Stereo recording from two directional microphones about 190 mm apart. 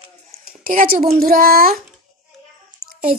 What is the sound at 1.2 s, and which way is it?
Speech, 50° right (ahead or behind).